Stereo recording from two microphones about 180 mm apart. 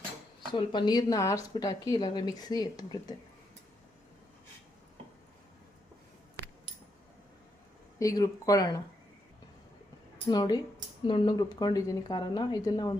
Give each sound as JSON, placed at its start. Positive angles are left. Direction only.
{"t": 0.5, "sound": "speech", "side_deg": 25}
{"t": 7.9, "sound": "speech", "side_deg": 20}
{"t": 10.2, "sound": "speech", "side_deg": 25}